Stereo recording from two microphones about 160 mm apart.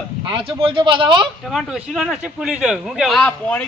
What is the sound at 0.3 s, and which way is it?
Speech, 35° right (ahead or behind).